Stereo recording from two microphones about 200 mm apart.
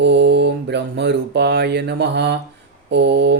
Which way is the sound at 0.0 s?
60° right (ahead or behind).